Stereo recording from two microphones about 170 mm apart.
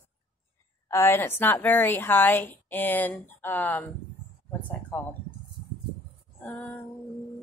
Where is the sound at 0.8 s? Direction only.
15° left (ahead or behind).